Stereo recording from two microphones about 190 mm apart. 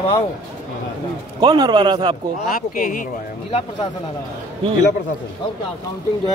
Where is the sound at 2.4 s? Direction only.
50° left (ahead or behind).